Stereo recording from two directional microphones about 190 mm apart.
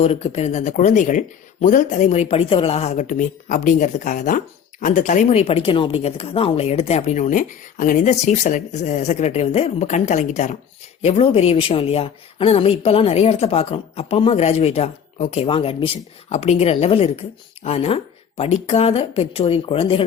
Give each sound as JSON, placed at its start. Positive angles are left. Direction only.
{"t": 0.0, "sound": "speech", "side_deg": 35}